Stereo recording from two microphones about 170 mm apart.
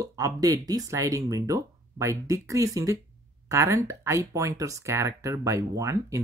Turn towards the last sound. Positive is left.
turn(degrees=-15)  # may be behind; listen again after turning